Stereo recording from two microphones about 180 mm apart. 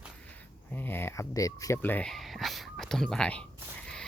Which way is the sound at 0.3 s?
10° left (ahead or behind).